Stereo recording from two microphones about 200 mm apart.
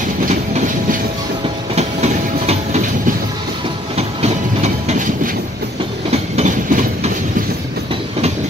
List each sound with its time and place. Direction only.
1.8 s train: 35° right (ahead or behind)
4.8 s train: 40° right (ahead or behind)
6.3 s train: 35° right (ahead or behind)